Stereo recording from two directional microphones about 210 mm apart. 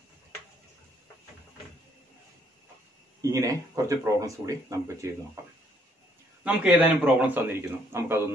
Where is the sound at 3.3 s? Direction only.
15° right (ahead or behind).